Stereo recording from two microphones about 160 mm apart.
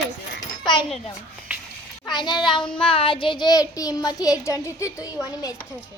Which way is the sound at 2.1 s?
25° left (ahead or behind).